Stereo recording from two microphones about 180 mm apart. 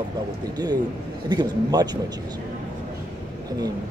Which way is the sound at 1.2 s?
25° right (ahead or behind).